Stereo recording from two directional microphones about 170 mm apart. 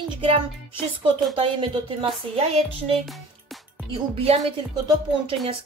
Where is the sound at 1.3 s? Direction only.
30° right (ahead or behind).